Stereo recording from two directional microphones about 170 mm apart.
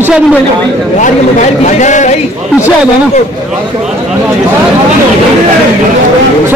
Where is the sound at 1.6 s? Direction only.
45° left (ahead or behind).